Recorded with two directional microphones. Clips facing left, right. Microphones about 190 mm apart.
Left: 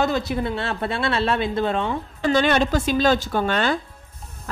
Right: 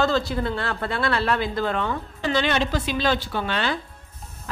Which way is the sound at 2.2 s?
50° left (ahead or behind).